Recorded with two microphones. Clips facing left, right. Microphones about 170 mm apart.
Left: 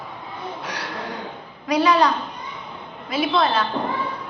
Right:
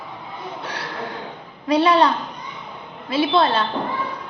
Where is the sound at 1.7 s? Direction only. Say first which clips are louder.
Right 2 dB; 30° right (ahead or behind).